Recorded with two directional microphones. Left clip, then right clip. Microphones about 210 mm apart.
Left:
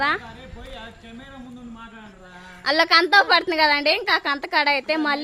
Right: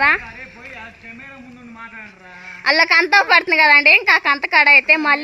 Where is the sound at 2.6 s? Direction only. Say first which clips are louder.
Right 4 dB; 15° right (ahead or behind).